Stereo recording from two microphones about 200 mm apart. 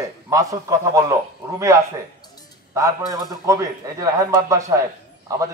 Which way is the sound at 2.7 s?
15° right (ahead or behind).